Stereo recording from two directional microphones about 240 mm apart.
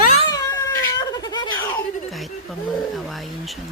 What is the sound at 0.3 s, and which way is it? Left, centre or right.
Cat, centre.